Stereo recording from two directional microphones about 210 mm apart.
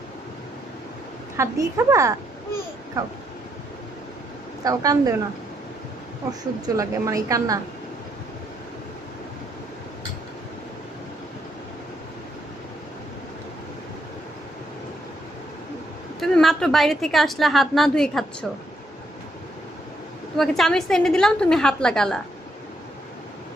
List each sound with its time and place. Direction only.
1.4 s a woman's voice: 15° right (ahead or behind)
4.6 s a woman's voice: 15° right (ahead or behind)
6.7 s a woman's voice: 15° right (ahead or behind)
16.2 s a woman's voice: centre (ahead or behind)
20.3 s a woman's voice: centre (ahead or behind)